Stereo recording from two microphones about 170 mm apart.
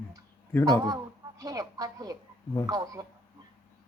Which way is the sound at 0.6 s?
20° right (ahead or behind).